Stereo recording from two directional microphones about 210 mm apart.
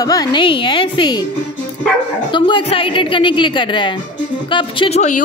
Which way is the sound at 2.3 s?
25° left (ahead or behind).